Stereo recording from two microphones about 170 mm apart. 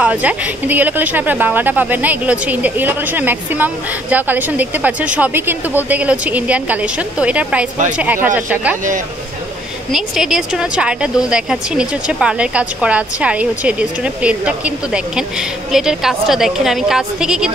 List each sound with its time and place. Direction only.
0.0 s a woman's voice: 10° right (ahead or behind)
9.9 s speech: 5° right (ahead or behind)